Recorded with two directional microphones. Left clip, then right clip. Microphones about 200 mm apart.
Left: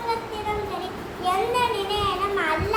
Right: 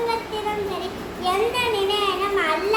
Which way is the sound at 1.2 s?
15° right (ahead or behind).